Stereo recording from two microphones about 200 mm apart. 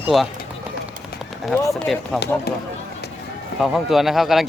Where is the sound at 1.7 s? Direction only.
Centre (ahead or behind).